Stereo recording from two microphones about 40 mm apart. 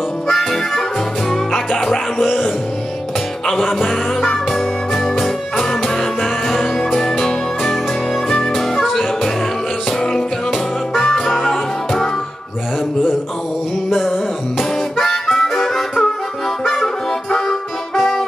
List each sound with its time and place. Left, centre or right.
1.3 s music: centre
11.0 s music: centre
11.2 s music: centre
13.8 s music: centre
14.6 s harmonica: centre
16.6 s music: centre